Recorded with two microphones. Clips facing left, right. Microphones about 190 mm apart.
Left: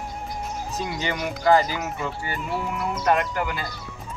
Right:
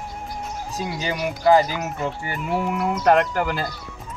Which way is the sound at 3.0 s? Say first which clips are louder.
Right 5 dB; 70° right (ahead or behind).